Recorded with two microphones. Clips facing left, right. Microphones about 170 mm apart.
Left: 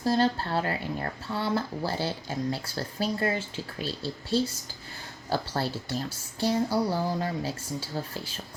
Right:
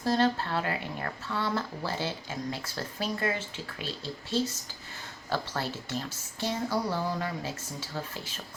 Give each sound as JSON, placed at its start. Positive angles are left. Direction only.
{"t": 0.2, "sound": "speech", "side_deg": 35}
{"t": 5.3, "sound": "speech", "side_deg": 35}